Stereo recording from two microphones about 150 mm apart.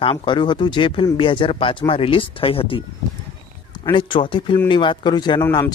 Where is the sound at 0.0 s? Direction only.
35° left (ahead or behind).